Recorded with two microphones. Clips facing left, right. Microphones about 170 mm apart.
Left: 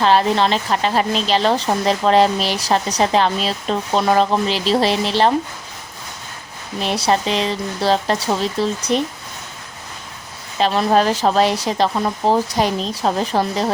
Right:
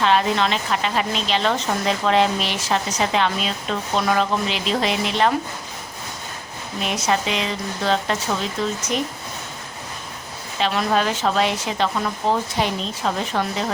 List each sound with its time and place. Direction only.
0.0 s a woman's voice: 35° left (ahead or behind)
6.8 s a woman's voice: 35° left (ahead or behind)
10.6 s a woman's voice: 35° left (ahead or behind)